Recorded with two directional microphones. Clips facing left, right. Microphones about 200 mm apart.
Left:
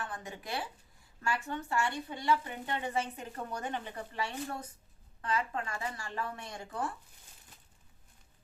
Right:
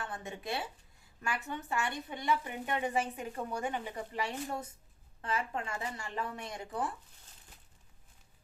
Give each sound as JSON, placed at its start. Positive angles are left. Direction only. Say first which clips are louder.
{"t": 0.0, "sound": "a woman's voice", "louder": "right 1 dB", "side_deg": -25}